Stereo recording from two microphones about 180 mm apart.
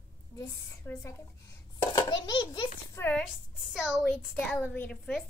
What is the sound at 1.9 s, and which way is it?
A child's voice, 20° left (ahead or behind).